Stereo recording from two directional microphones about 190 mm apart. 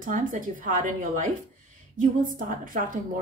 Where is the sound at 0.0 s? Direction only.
45° right (ahead or behind).